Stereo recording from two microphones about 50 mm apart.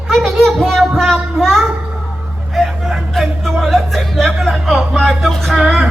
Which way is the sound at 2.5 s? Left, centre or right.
Centre.